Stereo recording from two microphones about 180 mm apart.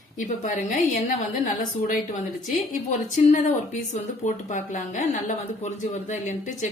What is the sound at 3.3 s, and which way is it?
A woman's voice, 45° left (ahead or behind).